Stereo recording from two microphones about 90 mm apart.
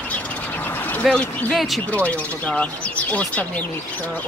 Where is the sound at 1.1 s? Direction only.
15° left (ahead or behind).